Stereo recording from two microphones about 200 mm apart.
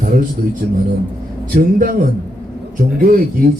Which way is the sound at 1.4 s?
45° right (ahead or behind).